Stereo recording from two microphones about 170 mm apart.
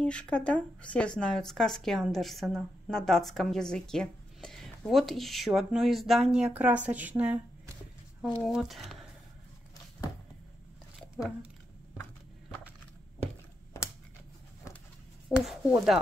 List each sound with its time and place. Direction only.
0.0 s speech: 5° left (ahead or behind)
13.7 s a sound: 15° left (ahead or behind)
15.2 s speech: centre (ahead or behind)